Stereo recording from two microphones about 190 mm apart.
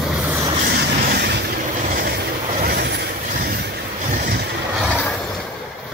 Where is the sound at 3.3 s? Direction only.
40° right (ahead or behind).